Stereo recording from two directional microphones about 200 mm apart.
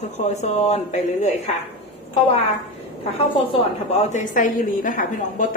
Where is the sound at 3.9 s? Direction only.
35° left (ahead or behind).